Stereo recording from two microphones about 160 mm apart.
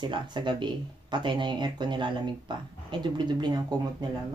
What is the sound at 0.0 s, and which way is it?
Speech, 30° right (ahead or behind).